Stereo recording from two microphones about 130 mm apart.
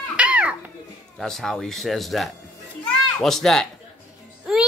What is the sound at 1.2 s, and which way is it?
Speech, 5° left (ahead or behind).